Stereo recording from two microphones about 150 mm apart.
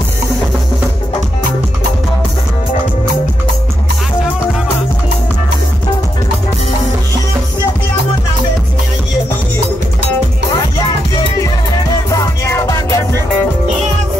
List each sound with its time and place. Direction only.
12.1 s music: 20° left (ahead or behind)